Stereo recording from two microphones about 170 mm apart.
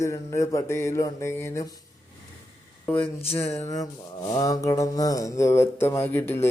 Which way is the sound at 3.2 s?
40° left (ahead or behind).